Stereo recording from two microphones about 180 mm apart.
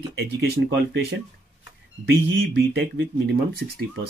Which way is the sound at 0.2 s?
65° right (ahead or behind).